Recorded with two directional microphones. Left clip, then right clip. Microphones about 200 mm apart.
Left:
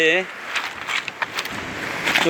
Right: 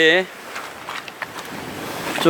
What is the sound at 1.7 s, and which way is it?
Boat, 40° right (ahead or behind).